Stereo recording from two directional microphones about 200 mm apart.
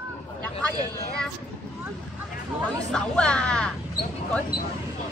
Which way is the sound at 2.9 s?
5° left (ahead or behind).